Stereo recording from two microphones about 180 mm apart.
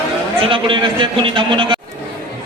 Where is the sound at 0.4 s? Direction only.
30° right (ahead or behind).